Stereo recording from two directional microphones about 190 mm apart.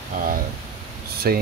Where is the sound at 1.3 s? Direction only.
50° right (ahead or behind).